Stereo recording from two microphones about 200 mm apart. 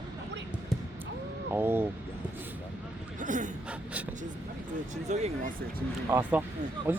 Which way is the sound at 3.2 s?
40° right (ahead or behind).